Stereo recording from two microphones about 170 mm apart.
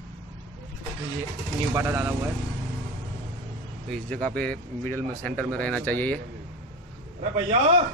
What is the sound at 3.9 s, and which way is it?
Speech, 5° left (ahead or behind).